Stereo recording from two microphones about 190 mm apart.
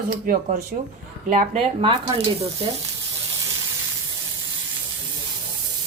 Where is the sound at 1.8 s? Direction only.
30° right (ahead or behind).